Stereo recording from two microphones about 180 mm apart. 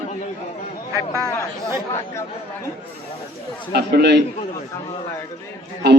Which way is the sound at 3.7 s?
65° right (ahead or behind).